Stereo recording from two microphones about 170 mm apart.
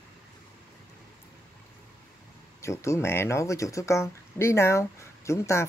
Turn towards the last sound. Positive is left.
turn(degrees=15)  # may be behind; listen again after turning